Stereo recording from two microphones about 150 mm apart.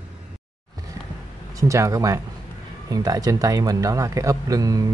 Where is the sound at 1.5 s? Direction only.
20° right (ahead or behind).